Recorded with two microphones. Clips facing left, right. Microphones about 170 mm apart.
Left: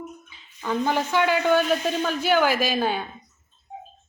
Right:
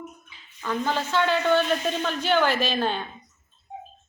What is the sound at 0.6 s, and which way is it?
A man's voice, 15° left (ahead or behind).